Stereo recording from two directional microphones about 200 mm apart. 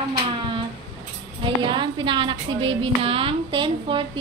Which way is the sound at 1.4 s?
25° right (ahead or behind).